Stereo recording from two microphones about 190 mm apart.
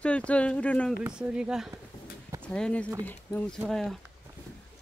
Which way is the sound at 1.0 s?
5° right (ahead or behind).